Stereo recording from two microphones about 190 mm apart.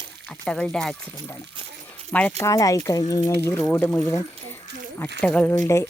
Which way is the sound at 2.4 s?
15° left (ahead or behind).